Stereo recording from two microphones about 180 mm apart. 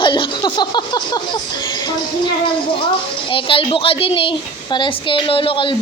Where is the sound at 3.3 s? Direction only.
30° left (ahead or behind).